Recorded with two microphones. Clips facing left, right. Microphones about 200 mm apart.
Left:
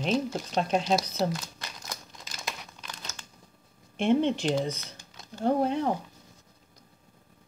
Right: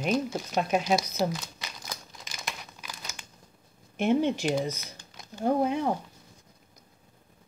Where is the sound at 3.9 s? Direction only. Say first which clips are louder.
Left 1 dB; 5° right (ahead or behind).